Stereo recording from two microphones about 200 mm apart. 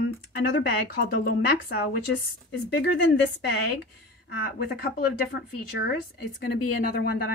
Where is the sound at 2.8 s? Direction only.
65° left (ahead or behind).